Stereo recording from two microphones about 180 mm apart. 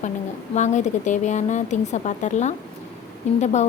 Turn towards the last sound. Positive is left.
turn(degrees=40)  # may be behind; listen again after turning